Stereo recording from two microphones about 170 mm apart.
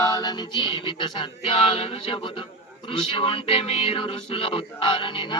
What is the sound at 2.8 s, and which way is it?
Speech, 30° left (ahead or behind).